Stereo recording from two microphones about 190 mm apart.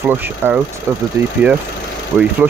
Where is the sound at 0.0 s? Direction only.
10° right (ahead or behind).